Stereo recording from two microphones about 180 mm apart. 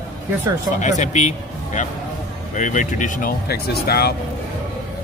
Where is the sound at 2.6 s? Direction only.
45° left (ahead or behind); by 4.2 s 60° left (ahead or behind).